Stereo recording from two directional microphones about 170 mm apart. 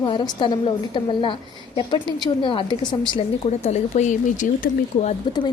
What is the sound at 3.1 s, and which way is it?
Speech, 40° left (ahead or behind).